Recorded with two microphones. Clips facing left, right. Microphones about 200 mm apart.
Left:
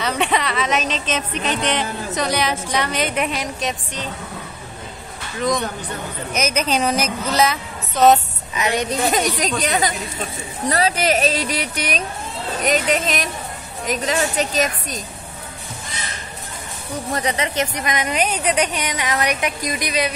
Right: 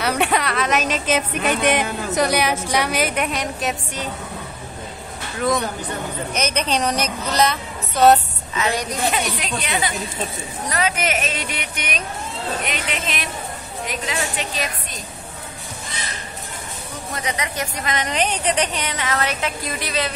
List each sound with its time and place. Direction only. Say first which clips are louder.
0.0 s speech: right 1 dB; 5° right (ahead or behind)
6.3 s a woman's voice: left 2 dB; 5° left (ahead or behind)
8.5 s a woman's voice: left 1 dB; 20° left (ahead or behind)
9.1 s speech: left 4 dB; 40° left (ahead or behind)
17.2 s speech: left 3 dB; 35° left (ahead or behind)
17.6 s a woman's voice: left 3 dB; 15° left (ahead or behind)